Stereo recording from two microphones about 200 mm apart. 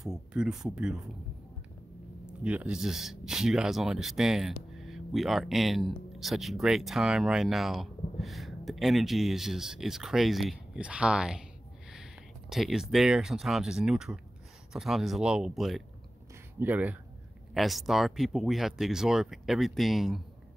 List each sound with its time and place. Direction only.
0.0 s speech: centre (ahead or behind)
2.2 s speech: 5° right (ahead or behind)
11.9 s a sound: centre (ahead or behind)
12.9 s speech: centre (ahead or behind)